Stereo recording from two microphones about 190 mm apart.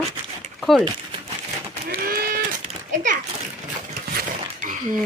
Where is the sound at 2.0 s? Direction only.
50° right (ahead or behind).